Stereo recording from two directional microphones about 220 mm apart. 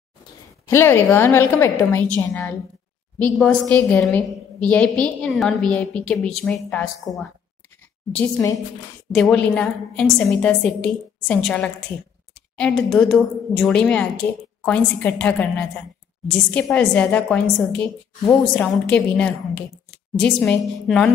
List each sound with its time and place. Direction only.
0.7 s a woman's voice: 10° left (ahead or behind)